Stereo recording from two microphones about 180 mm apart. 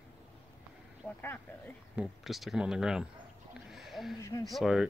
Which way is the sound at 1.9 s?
Centre (ahead or behind).